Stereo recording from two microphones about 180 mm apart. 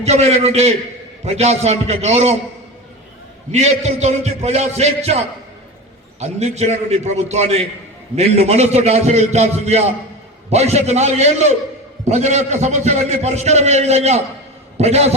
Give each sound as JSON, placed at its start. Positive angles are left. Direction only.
{"t": 0.0, "sound": "a man's voice", "side_deg": -35}
{"t": 3.5, "sound": "a man's voice", "side_deg": -40}